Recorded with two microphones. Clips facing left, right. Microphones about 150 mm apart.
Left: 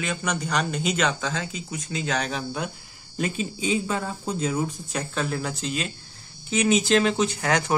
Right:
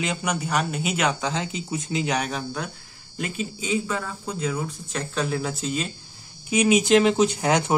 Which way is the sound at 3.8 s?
25° left (ahead or behind).